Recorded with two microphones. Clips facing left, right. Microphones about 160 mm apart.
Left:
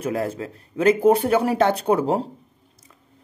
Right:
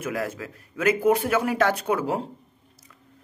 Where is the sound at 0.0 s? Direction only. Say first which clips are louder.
Left 4 dB; 30° left (ahead or behind).